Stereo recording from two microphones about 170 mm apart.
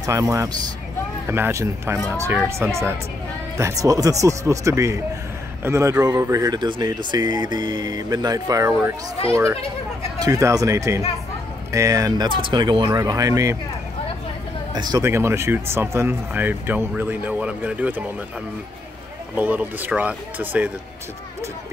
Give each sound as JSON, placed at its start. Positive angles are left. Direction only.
{"t": 0.0, "sound": "speech", "side_deg": -20}
{"t": 14.7, "sound": "speech", "side_deg": -25}
{"t": 19.3, "sound": "speech", "side_deg": -10}